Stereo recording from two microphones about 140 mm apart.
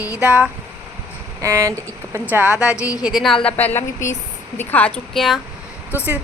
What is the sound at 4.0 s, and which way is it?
Speech, 60° left (ahead or behind).